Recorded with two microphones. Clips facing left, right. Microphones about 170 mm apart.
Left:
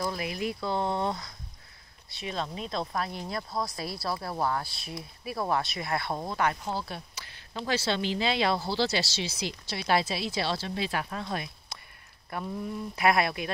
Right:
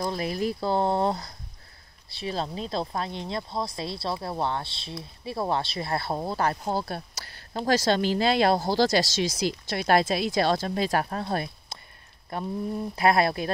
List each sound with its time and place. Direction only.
0.0 s speech: 30° right (ahead or behind)